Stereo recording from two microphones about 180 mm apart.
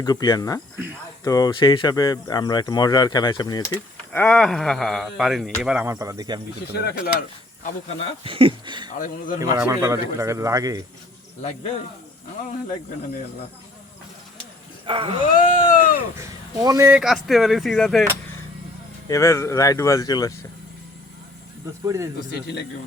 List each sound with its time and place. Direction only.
0.0 s a man's voice: 20° left (ahead or behind); by 6.4 s 25° right (ahead or behind)
6.7 s mechanisms: 60° left (ahead or behind)
8.2 s speech: 30° right (ahead or behind)
8.9 s a man's voice: 45° left (ahead or behind)
9.4 s a man's voice: 15° right (ahead or behind)
14.8 s speech: 30° right (ahead or behind)
15.3 s a sound: 45° left (ahead or behind)
16.1 s speech: 20° right (ahead or behind)
17.0 s speech: centre (ahead or behind)
19.0 s speech: 15° left (ahead or behind)
21.8 s a man's voice: 15° right (ahead or behind)